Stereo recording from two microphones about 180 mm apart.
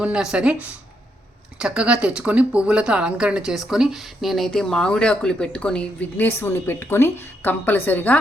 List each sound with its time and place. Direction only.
0.0 s speech: 5° right (ahead or behind)
1.5 s speech: 5° right (ahead or behind)